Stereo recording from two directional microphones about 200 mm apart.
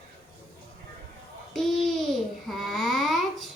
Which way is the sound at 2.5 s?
Centre (ahead or behind).